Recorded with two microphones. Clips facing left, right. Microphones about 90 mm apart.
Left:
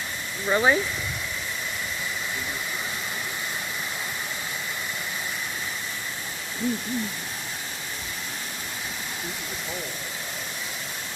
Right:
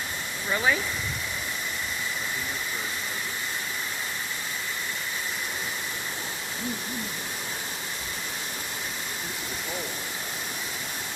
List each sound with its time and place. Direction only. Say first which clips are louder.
0.5 s speech: left 4 dB; 30° left (ahead or behind)